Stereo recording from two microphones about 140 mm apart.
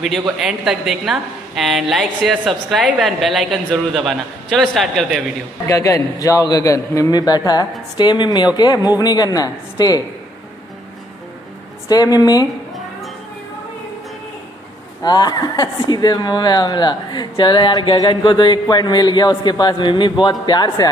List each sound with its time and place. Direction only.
0.4 s a woman's voice: 5° right (ahead or behind)
5.7 s a man's voice: 20° left (ahead or behind)
11.9 s a man's voice: 25° left (ahead or behind)
15.0 s speech: 30° left (ahead or behind)